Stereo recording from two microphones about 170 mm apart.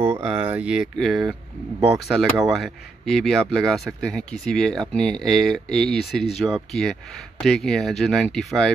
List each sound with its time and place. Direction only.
0.0 s speech: 10° right (ahead or behind)